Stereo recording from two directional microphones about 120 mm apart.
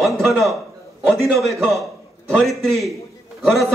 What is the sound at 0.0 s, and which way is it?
A man's voice, centre (ahead or behind).